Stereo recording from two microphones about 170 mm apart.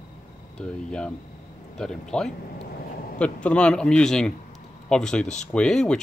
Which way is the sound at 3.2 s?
5° left (ahead or behind).